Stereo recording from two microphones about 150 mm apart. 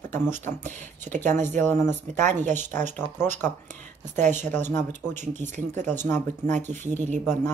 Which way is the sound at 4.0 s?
55° right (ahead or behind).